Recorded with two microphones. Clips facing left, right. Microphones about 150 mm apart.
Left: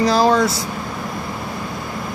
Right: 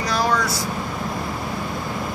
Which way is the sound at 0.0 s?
25° left (ahead or behind).